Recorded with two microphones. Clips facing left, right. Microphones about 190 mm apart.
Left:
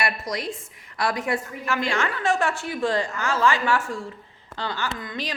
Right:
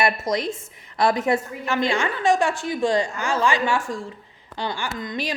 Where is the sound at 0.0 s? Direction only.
25° right (ahead or behind).